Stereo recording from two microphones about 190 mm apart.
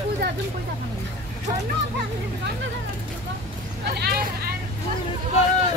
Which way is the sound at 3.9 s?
55° right (ahead or behind).